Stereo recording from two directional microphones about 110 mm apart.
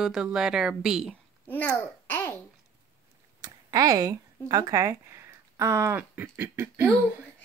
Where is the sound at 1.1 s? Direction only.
15° left (ahead or behind).